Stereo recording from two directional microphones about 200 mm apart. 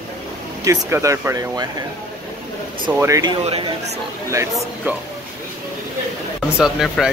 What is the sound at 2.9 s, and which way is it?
Speech, 15° right (ahead or behind).